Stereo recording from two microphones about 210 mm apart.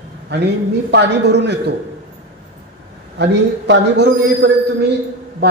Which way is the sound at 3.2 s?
55° right (ahead or behind).